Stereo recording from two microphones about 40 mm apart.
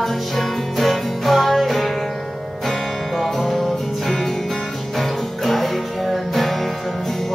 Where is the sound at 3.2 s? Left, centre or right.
Centre.